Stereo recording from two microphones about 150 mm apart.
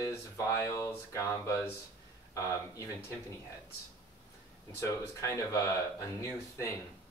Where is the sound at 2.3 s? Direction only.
20° left (ahead or behind).